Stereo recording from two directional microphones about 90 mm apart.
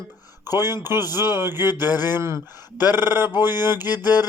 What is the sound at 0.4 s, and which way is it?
Speech, 45° left (ahead or behind).